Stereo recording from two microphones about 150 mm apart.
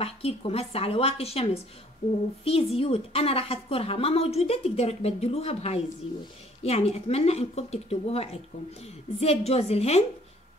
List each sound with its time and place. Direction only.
0.0 s a woman's voice: 40° left (ahead or behind)